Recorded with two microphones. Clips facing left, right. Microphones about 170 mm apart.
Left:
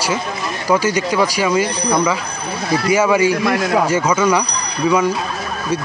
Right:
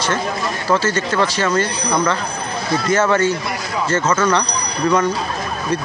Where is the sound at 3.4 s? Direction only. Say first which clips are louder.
Left 8 dB; 90° left.